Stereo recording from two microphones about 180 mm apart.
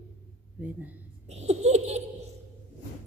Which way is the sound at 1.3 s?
35° right (ahead or behind).